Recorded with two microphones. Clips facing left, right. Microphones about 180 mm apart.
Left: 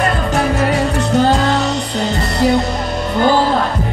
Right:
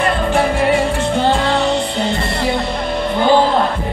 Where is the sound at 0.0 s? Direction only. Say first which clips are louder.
Right 1 dB; 40° left (ahead or behind).